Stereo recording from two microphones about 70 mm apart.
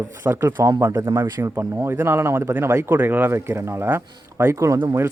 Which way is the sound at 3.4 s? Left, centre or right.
Right.